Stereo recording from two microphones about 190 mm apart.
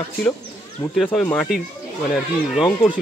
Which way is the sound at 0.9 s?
5° left (ahead or behind).